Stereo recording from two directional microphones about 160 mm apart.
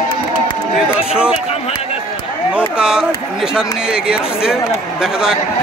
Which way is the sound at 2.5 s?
5° right (ahead or behind).